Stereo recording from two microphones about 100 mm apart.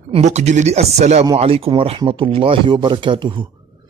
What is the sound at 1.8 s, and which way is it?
A man's voice, 60° right (ahead or behind).